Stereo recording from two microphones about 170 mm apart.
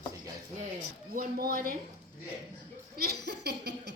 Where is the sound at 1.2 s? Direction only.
60° right (ahead or behind).